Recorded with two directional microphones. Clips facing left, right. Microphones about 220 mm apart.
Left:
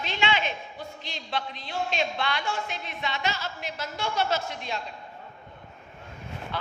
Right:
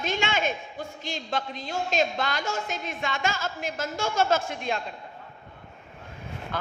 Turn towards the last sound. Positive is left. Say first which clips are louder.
# right 2 dB
turn(degrees=-45)  # may be behind; listen again after turning